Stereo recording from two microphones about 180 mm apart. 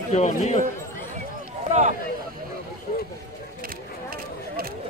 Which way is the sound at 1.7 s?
40° right (ahead or behind).